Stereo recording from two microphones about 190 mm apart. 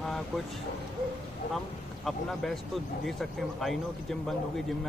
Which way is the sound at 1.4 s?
55° left (ahead or behind).